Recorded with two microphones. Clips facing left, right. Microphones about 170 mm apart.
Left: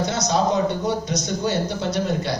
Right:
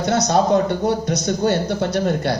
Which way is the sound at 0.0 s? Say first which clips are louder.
Right 4 dB; 55° right (ahead or behind).